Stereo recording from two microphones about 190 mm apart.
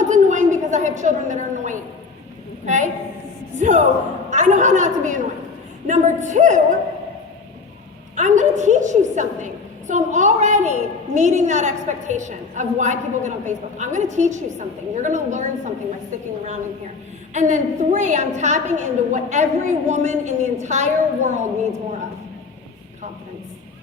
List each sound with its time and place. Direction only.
0.0 s a sound: 40° right (ahead or behind)
2.6 s a woman's voice: 40° right (ahead or behind)
8.1 s a woman's voice: 40° right (ahead or behind)
17.3 s a woman's voice: 40° right (ahead or behind)